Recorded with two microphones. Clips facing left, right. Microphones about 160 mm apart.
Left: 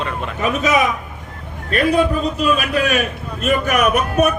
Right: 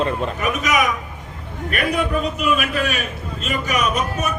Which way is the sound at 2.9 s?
50° left (ahead or behind).